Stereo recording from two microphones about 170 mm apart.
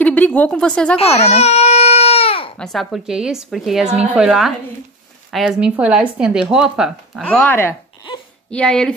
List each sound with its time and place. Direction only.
0.0 s speech: 10° left (ahead or behind)
0.9 s baby cry: 40° left (ahead or behind)
2.6 s speech: centre (ahead or behind)
7.2 s speech: 10° left (ahead or behind)